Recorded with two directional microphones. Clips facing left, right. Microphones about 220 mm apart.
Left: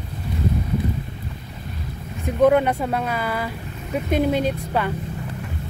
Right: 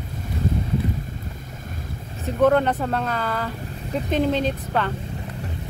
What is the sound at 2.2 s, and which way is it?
Speech, 10° left (ahead or behind).